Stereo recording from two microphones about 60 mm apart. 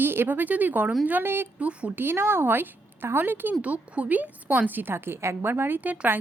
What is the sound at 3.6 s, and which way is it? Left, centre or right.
A woman's voice, right.